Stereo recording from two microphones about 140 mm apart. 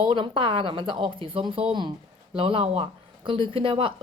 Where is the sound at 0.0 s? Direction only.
40° right (ahead or behind).